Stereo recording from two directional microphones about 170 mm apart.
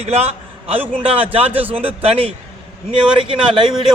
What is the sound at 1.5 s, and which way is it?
Speech, 10° right (ahead or behind).